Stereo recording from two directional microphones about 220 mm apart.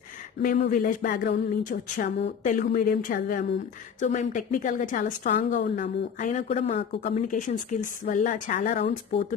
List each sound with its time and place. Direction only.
0.4 s a woman's voice: 40° left (ahead or behind)